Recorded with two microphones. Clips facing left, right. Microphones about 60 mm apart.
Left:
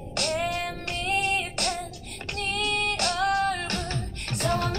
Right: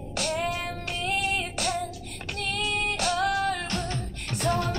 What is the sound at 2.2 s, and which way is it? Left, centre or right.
Female singing, centre.